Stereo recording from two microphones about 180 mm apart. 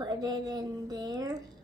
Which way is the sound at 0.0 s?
25° right (ahead or behind).